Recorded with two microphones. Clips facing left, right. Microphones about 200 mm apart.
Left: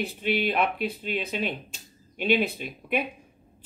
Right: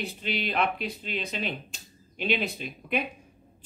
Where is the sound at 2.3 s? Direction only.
55° left (ahead or behind).